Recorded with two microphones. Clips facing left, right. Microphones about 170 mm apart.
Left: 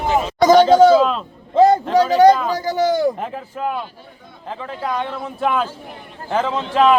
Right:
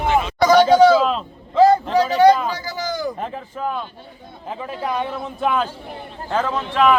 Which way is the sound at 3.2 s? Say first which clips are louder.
Left 1 dB; 5° left (ahead or behind).